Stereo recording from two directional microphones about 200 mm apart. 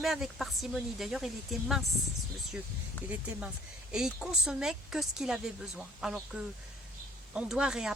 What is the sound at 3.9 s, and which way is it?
Speech, centre (ahead or behind).